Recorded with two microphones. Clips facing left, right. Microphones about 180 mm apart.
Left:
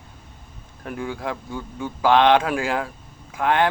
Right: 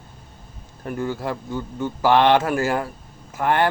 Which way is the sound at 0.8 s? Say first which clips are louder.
Right 3 dB; centre (ahead or behind).